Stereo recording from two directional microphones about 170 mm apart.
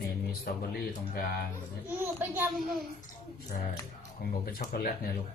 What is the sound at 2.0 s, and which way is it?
Speech, 10° right (ahead or behind).